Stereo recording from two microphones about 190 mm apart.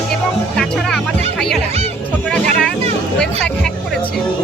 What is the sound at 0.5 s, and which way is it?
Music, centre (ahead or behind).